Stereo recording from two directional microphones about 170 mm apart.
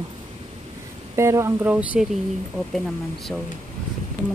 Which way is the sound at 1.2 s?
15° right (ahead or behind).